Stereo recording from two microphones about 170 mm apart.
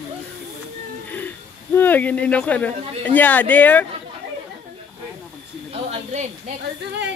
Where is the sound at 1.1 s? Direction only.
10° left (ahead or behind).